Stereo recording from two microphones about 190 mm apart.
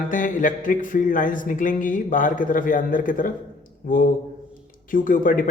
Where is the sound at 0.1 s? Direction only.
45° left (ahead or behind).